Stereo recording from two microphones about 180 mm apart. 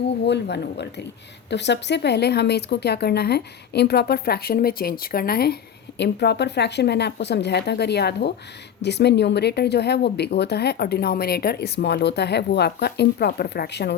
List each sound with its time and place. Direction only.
0.3 s speech: 70° left (ahead or behind)
6.0 s speech: 70° left (ahead or behind)